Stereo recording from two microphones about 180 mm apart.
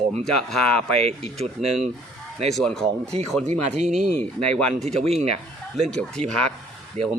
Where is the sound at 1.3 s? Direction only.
35° right (ahead or behind).